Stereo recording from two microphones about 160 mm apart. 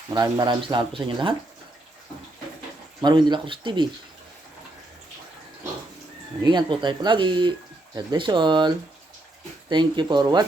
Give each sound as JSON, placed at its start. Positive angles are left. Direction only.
{"t": 0.1, "sound": "speech", "side_deg": -25}
{"t": 3.0, "sound": "speech", "side_deg": -25}
{"t": 6.4, "sound": "speech", "side_deg": -30}